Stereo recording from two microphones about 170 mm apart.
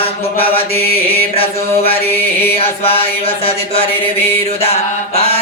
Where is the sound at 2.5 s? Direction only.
35° left (ahead or behind).